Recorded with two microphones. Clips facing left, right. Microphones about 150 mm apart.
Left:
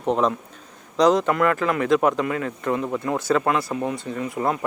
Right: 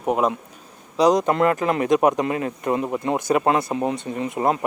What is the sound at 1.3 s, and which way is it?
Speech, 25° right (ahead or behind).